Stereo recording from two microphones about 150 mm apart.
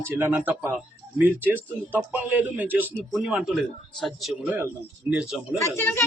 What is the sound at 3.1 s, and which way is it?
Speech, centre (ahead or behind).